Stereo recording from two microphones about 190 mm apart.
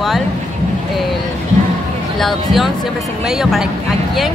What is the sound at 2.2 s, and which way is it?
Speech, centre (ahead or behind).